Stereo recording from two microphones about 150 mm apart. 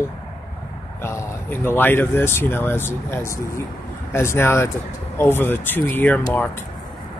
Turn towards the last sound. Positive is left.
turn(degrees=10)  # may be behind; listen again after turning